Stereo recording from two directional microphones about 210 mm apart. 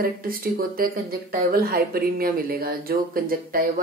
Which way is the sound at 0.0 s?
45° right (ahead or behind).